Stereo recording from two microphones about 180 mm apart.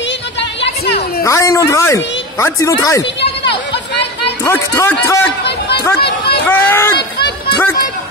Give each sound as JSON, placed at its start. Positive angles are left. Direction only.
{"t": 0.4, "sound": "a sound", "side_deg": 75}
{"t": 1.2, "sound": "speech", "side_deg": 15}
{"t": 3.4, "sound": "chatter", "side_deg": 70}
{"t": 4.5, "sound": "speech", "side_deg": 15}
{"t": 5.9, "sound": "a sound", "side_deg": 65}
{"t": 6.5, "sound": "speech", "side_deg": 10}